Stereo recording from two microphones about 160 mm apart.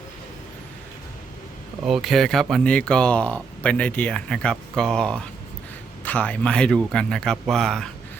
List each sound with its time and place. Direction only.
1.8 s speech: centre (ahead or behind)